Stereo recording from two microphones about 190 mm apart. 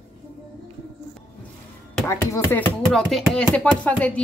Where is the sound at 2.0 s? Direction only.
15° left (ahead or behind).